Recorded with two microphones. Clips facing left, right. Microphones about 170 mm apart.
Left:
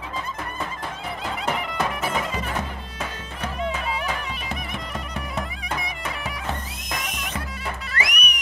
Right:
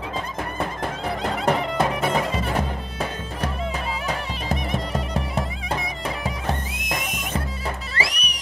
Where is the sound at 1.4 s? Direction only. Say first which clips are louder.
Right 5 dB; 30° right (ahead or behind).